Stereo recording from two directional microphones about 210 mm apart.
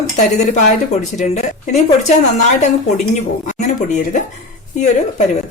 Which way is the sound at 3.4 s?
35° left (ahead or behind).